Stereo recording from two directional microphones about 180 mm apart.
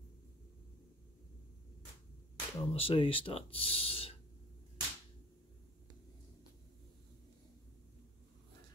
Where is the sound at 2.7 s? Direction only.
30° left (ahead or behind).